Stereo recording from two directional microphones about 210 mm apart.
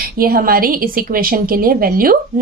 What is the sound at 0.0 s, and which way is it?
A woman's voice, 45° right (ahead or behind).